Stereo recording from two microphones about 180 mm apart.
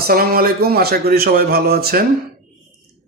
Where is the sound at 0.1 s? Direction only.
55° right (ahead or behind).